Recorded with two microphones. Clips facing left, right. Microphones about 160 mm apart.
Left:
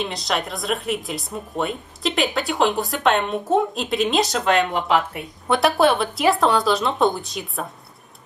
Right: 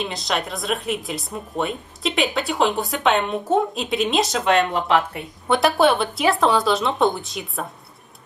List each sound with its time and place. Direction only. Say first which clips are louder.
0.0 s speech: even; centre (ahead or behind)